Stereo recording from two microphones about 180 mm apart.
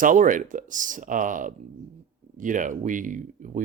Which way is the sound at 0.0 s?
45° right (ahead or behind).